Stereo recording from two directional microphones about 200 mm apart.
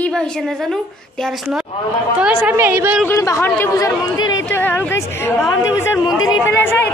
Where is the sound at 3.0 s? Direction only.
15° left (ahead or behind).